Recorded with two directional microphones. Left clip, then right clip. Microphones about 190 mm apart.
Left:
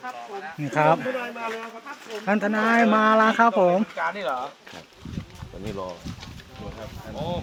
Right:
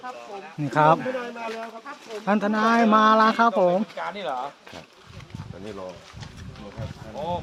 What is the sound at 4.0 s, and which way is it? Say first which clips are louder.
Speech: left 3 dB; 10° right (ahead or behind).